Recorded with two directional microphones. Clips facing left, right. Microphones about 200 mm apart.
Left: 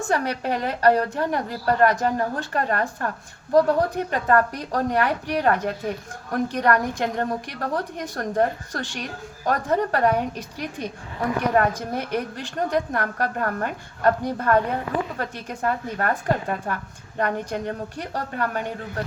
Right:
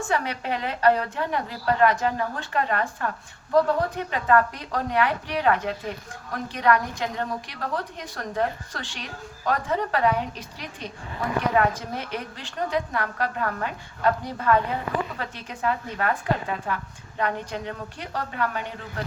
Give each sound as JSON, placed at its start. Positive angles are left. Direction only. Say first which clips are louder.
{"t": 0.0, "sound": "a woman's voice", "louder": "left 3 dB", "side_deg": 40}
{"t": 11.5, "sound": "a woman's voice", "louder": "left 2 dB", "side_deg": 45}